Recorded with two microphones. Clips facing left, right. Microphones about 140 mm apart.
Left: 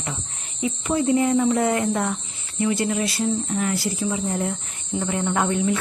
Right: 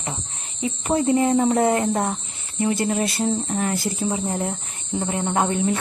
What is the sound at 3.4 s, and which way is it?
Speech, 35° right (ahead or behind).